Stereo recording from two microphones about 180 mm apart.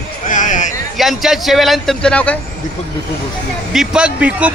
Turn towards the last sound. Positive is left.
turn(degrees=-5)  # may be behind; listen again after turning